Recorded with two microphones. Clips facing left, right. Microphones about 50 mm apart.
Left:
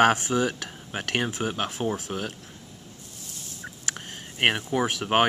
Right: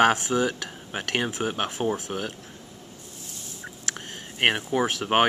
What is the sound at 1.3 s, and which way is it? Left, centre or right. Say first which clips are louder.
Speech: right 1 dB; right.